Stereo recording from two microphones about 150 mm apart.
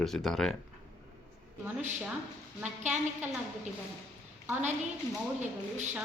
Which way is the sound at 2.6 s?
10° right (ahead or behind).